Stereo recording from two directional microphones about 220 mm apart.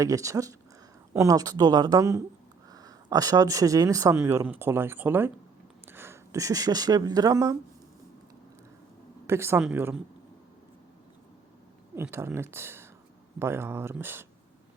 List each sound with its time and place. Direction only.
0.0 s speech: 15° right (ahead or behind)
9.2 s speech: 10° right (ahead or behind)
11.9 s speech: 10° right (ahead or behind)